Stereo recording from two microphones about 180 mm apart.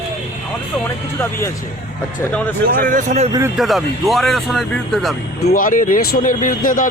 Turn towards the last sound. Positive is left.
turn(degrees=50)  # may be behind; listen again after turning